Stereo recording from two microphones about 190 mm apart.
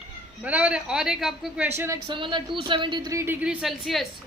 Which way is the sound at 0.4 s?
10° right (ahead or behind).